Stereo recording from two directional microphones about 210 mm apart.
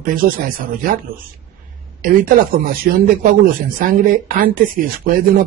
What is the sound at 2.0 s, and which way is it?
Speech, 45° right (ahead or behind).